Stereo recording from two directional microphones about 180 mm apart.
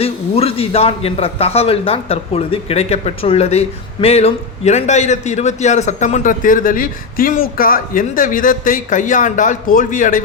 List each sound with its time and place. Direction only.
0.0 s a man's voice: 35° left (ahead or behind)